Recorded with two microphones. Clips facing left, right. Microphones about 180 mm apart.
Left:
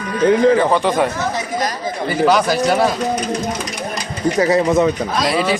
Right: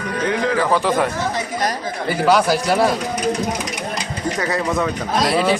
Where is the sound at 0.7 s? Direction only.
5° right (ahead or behind).